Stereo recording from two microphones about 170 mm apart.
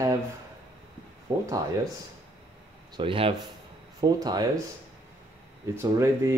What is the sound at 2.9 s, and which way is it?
Speech, 30° right (ahead or behind).